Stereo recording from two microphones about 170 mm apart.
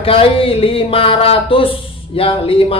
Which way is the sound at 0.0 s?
30° left (ahead or behind).